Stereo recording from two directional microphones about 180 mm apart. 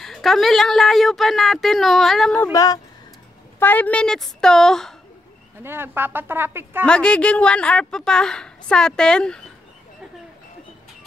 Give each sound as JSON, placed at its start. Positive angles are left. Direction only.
{"t": 0.0, "sound": "speech", "side_deg": 0}
{"t": 2.5, "sound": "speech", "side_deg": 20}
{"t": 5.6, "sound": "speech", "side_deg": -10}
{"t": 6.9, "sound": "speech", "side_deg": 5}